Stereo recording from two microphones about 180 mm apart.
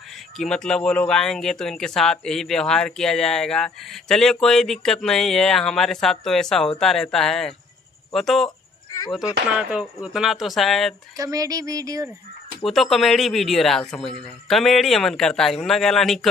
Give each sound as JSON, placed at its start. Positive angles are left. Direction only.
{"t": 0.4, "sound": "speech", "side_deg": 5}
{"t": 8.5, "sound": "a sound", "side_deg": 20}
{"t": 9.6, "sound": "speech", "side_deg": -5}
{"t": 11.1, "sound": "fowl", "side_deg": -20}
{"t": 12.6, "sound": "speech", "side_deg": 0}